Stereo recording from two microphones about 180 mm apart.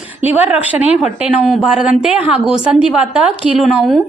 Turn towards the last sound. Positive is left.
turn(degrees=0)  # may be behind; listen again after turning